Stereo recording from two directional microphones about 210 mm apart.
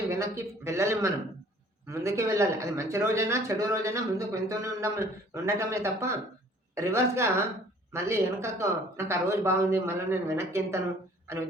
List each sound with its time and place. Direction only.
0.1 s a man's voice: 15° right (ahead or behind)